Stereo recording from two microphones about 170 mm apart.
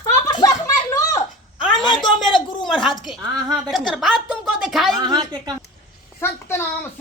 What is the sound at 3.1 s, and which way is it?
A woman's voice, centre (ahead or behind).